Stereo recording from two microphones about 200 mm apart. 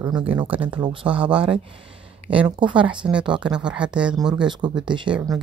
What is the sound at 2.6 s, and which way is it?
Speech, 25° right (ahead or behind).